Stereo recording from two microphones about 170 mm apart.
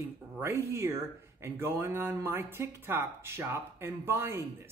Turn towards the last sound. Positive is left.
turn(degrees=-15)  # may be behind; listen again after turning